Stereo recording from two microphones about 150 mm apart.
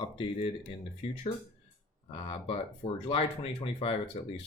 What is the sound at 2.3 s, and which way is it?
Speech, 40° left (ahead or behind).